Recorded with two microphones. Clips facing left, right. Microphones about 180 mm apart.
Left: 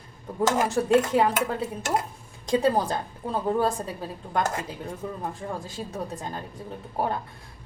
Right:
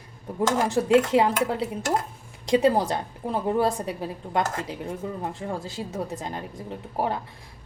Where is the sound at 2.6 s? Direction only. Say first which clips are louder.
Right 2 dB; 20° right (ahead or behind).